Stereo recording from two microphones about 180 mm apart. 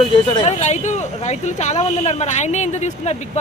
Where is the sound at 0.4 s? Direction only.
40° left (ahead or behind).